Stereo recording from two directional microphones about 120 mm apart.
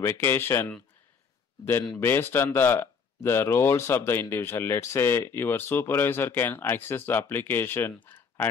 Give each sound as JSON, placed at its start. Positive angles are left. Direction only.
{"t": 0.0, "sound": "speech", "side_deg": 20}